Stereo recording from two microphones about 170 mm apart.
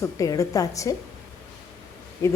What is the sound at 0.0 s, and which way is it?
Speech, 20° left (ahead or behind).